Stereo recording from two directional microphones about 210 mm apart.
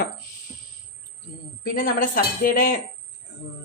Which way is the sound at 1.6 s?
40° left (ahead or behind).